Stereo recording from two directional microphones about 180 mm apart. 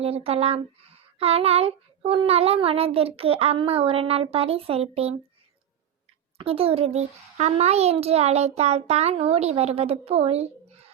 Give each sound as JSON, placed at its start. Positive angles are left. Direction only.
{"t": 0.0, "sound": "speech", "side_deg": -35}
{"t": 6.3, "sound": "speech", "side_deg": -30}